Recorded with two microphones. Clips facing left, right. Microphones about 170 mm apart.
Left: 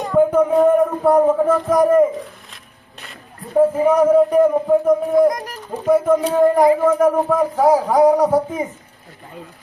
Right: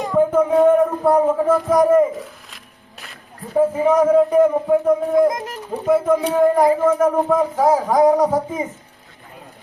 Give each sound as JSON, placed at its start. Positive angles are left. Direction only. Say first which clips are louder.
{"t": 0.0, "sound": "music", "louder": "left 2 dB", "side_deg": -5}
{"t": 3.0, "sound": "speech", "louder": "even", "side_deg": 0}
{"t": 5.3, "sound": "speech", "louder": "even", "side_deg": -20}
{"t": 5.8, "sound": "speech", "louder": "left 1 dB", "side_deg": 0}
{"t": 6.6, "sound": "speech", "louder": "left 1 dB", "side_deg": 15}